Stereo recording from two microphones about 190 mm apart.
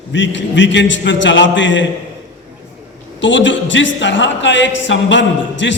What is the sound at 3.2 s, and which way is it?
A man's voice, 75° left (ahead or behind).